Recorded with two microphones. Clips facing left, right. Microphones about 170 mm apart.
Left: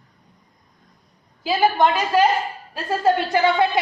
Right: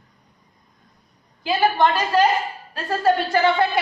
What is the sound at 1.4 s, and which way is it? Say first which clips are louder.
A woman's voice: left 1 dB; 10° left (ahead or behind).